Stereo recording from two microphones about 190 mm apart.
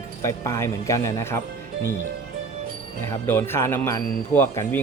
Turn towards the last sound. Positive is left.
turn(degrees=15)  # may be behind; listen again after turning